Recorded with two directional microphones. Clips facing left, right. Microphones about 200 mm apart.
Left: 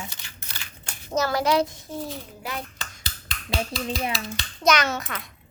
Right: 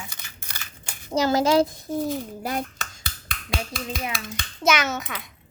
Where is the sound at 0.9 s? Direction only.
15° right (ahead or behind); by 2.6 s 45° right (ahead or behind).